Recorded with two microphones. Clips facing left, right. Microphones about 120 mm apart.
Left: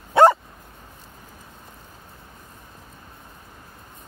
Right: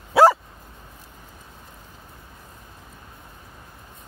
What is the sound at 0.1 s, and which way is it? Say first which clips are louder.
Dog: left 1 dB; centre (ahead or behind).